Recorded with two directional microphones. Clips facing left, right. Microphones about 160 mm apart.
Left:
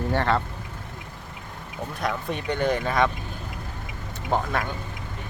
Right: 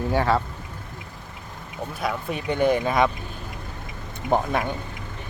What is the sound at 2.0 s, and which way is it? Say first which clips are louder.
Speech: even; 5° right (ahead or behind).